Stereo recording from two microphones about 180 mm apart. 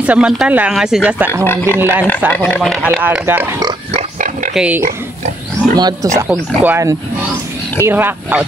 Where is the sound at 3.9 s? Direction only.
45° right (ahead or behind).